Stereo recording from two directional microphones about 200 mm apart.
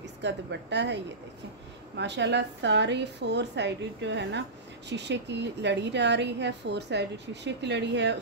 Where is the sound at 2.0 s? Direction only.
60° right (ahead or behind).